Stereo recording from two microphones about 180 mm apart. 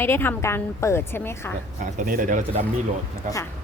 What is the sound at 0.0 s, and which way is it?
A woman's voice, 15° left (ahead or behind).